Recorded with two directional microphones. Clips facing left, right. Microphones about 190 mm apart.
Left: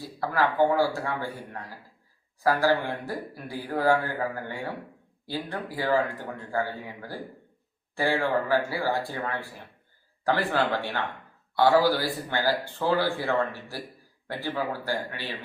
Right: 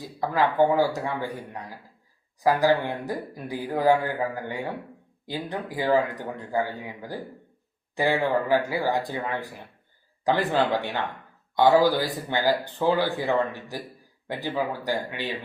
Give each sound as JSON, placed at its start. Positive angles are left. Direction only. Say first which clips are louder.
{"t": 0.2, "sound": "a man's voice", "louder": "right 2 dB", "side_deg": -20}